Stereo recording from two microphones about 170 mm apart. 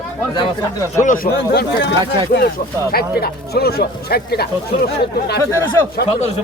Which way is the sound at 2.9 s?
65° left (ahead or behind).